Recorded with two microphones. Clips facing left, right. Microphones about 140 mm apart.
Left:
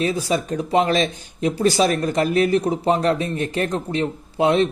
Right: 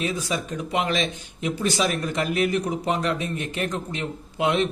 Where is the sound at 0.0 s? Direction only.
35° left (ahead or behind).